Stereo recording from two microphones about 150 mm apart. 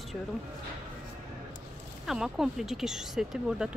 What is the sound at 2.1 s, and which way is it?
Speech, centre (ahead or behind).